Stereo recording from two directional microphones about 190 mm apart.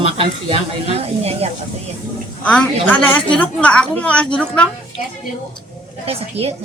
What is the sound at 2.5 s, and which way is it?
Speech, 5° left (ahead or behind).